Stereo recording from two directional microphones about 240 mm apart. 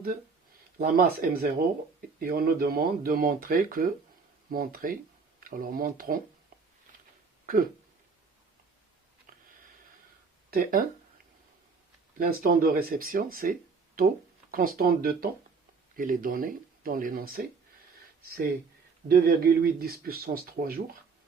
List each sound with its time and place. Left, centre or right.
0.8 s speech: right
10.5 s speech: right
12.1 s speech: right
19.0 s speech: right